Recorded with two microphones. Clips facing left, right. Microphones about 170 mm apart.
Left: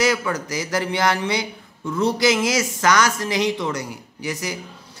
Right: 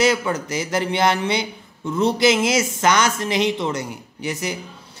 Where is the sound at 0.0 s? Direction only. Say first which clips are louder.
Right 2 dB; 25° right (ahead or behind).